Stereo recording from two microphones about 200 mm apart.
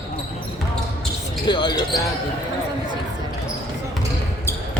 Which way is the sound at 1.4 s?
20° left (ahead or behind).